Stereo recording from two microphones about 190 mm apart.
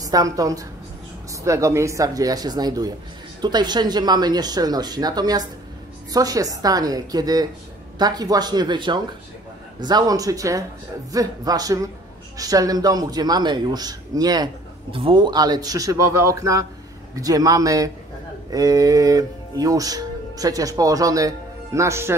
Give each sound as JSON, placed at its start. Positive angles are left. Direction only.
{"t": 0.0, "sound": "a man's voice", "side_deg": -20}